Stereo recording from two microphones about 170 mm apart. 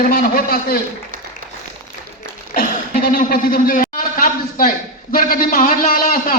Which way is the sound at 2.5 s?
55° left (ahead or behind).